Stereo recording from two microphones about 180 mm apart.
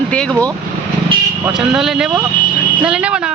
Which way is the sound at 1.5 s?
5° right (ahead or behind).